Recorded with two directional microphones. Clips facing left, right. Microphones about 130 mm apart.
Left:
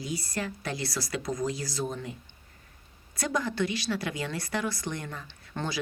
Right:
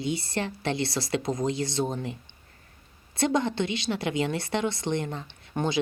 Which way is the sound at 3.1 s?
25° right (ahead or behind).